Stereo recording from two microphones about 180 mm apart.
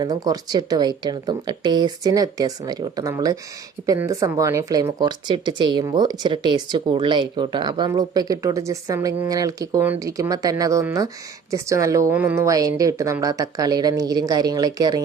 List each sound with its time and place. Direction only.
0.0 s speech: 20° right (ahead or behind)